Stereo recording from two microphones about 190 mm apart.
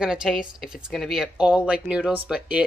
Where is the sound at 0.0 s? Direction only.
5° right (ahead or behind).